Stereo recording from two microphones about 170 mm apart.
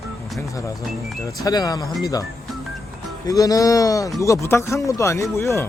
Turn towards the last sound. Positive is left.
turn(degrees=15)  # may be behind; listen again after turning